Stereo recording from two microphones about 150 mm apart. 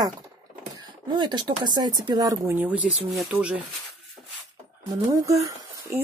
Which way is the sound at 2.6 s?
10° right (ahead or behind).